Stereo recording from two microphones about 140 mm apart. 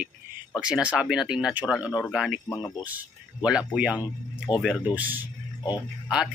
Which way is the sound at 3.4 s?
5° right (ahead or behind).